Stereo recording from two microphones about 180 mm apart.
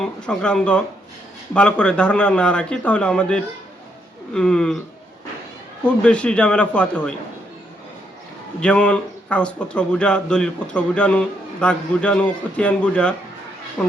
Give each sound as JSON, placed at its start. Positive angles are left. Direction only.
{"t": 0.0, "sound": "a man's voice", "side_deg": 5}
{"t": 5.8, "sound": "a man's voice", "side_deg": 5}
{"t": 8.6, "sound": "speech", "side_deg": 5}